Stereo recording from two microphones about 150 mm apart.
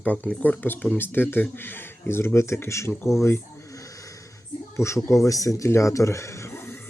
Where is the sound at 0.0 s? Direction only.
10° left (ahead or behind).